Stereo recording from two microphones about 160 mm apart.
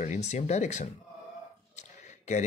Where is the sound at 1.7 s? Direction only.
45° left (ahead or behind).